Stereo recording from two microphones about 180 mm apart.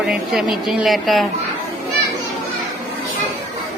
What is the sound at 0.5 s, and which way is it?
Music, centre (ahead or behind).